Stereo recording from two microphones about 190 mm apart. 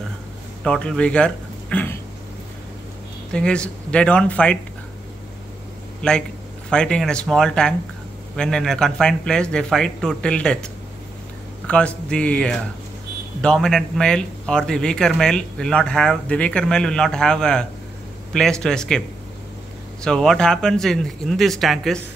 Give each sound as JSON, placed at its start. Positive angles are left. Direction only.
{"t": 0.7, "sound": "speech", "side_deg": 5}
{"t": 3.3, "sound": "speech", "side_deg": 5}
{"t": 6.7, "sound": "speech", "side_deg": 5}